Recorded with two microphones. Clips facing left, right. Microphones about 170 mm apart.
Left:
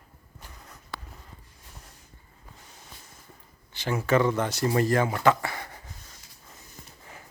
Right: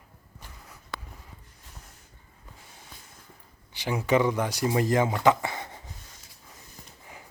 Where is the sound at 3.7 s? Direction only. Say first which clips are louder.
Even; 15° right (ahead or behind).